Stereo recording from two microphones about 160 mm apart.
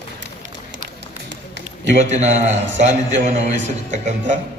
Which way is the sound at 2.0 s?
45° right (ahead or behind).